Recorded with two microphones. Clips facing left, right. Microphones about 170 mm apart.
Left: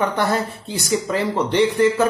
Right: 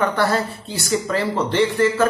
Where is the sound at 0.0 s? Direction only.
15° left (ahead or behind).